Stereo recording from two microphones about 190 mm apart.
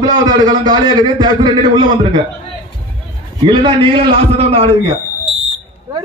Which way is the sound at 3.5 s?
25° right (ahead or behind).